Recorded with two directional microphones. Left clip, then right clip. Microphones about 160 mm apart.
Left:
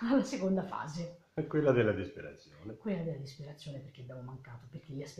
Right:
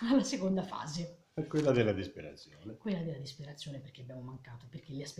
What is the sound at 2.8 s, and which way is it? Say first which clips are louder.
Speech: left 1 dB; centre (ahead or behind).